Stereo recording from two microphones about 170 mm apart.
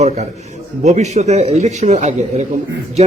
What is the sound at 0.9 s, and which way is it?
A man's voice, 45° right (ahead or behind).